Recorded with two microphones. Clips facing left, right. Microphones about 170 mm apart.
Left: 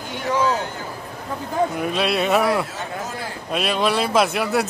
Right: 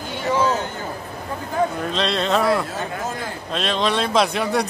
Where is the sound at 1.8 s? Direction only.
10° left (ahead or behind).